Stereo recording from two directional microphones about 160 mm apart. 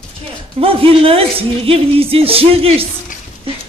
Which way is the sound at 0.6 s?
35° right (ahead or behind).